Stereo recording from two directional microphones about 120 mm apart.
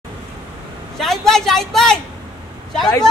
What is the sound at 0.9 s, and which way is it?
A woman's voice, centre (ahead or behind).